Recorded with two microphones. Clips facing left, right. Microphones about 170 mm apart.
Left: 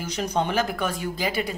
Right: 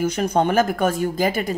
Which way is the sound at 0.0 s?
50° right (ahead or behind).